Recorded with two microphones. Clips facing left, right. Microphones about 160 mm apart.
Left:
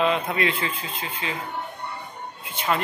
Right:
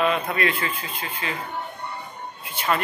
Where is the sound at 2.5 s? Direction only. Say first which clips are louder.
Right 1 dB; 15° left (ahead or behind).